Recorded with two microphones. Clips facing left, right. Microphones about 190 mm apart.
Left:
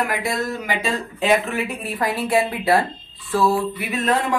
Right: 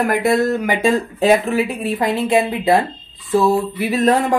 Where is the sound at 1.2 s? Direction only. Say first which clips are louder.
Right 4 dB; 30° right (ahead or behind).